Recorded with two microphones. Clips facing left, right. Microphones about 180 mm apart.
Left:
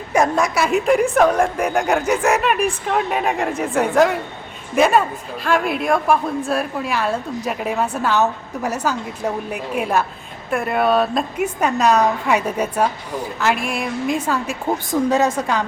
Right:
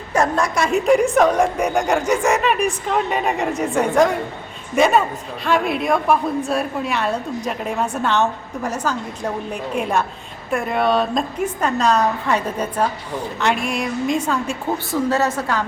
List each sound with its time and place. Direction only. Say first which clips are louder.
0.1 s a woman's voice: left 1 dB; 10° left (ahead or behind)
14.8 s a woman's voice: left 2 dB; 15° left (ahead or behind)